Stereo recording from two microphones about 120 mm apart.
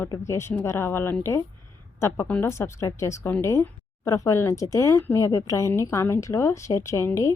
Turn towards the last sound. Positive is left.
turn(degrees=20)  # may be behind; listen again after turning